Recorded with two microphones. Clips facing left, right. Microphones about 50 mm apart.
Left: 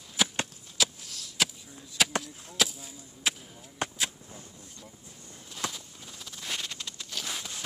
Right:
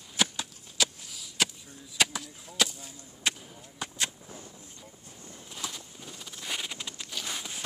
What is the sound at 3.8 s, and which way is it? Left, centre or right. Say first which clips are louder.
Artillery fire: left 5 dB; left.